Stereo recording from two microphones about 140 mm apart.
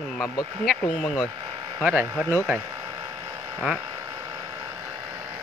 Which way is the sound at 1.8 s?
15° right (ahead or behind).